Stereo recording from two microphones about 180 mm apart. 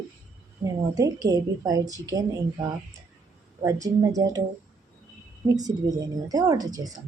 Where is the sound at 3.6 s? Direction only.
20° right (ahead or behind).